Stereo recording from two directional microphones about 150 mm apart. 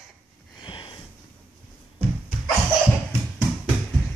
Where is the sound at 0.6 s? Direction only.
35° left (ahead or behind).